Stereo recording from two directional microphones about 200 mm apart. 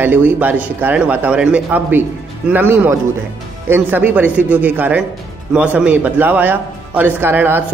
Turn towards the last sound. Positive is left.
turn(degrees=-10)  # may be behind; listen again after turning